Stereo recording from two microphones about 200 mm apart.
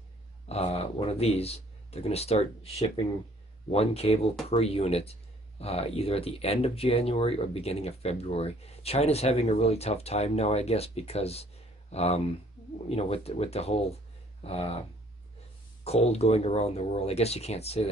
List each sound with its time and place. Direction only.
0.5 s speech: 30° left (ahead or behind)
15.8 s speech: 30° left (ahead or behind)